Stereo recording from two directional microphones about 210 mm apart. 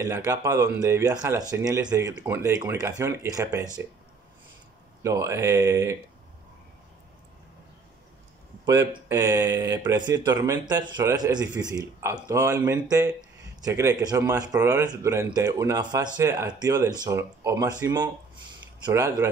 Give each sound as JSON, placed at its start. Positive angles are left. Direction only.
{"t": 0.0, "sound": "speech", "side_deg": -15}
{"t": 5.0, "sound": "speech", "side_deg": -15}
{"t": 8.6, "sound": "speech", "side_deg": -15}